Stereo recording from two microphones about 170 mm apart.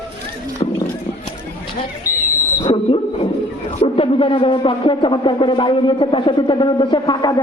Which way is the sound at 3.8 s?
30° left (ahead or behind).